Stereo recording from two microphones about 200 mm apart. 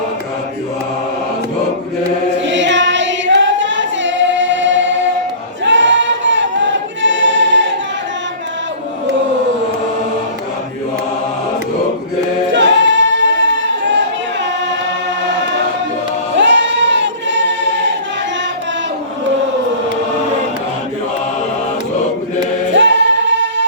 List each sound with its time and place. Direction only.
2.4 s choir: 65° right (ahead or behind)
12.5 s singing: 65° right (ahead or behind)
16.4 s a sound: 65° right (ahead or behind)
22.7 s music: 65° right (ahead or behind)